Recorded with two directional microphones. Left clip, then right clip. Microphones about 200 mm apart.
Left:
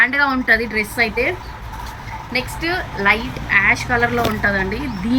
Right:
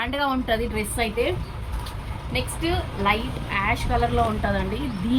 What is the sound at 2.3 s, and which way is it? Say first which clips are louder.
A woman's voice: left 5 dB; 30° right (ahead or behind).